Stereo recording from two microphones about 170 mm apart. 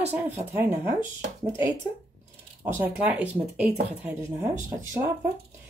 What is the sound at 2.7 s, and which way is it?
Speech, 10° right (ahead or behind).